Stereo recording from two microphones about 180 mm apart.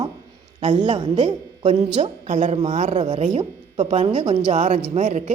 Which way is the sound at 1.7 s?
40° right (ahead or behind).